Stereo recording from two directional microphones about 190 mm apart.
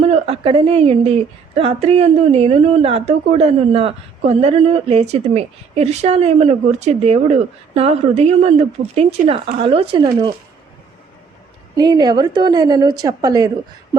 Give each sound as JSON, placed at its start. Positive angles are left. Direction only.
{"t": 0.0, "sound": "a woman's voice", "side_deg": -30}
{"t": 11.8, "sound": "a woman's voice", "side_deg": -20}